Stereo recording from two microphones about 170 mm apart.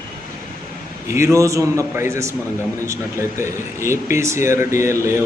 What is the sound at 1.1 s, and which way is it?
Speech, 15° right (ahead or behind).